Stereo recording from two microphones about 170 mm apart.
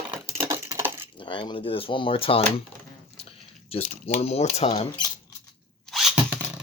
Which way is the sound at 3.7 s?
35° left (ahead or behind).